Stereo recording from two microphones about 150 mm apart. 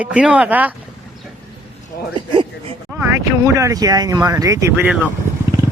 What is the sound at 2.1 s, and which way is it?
Speech, 35° right (ahead or behind).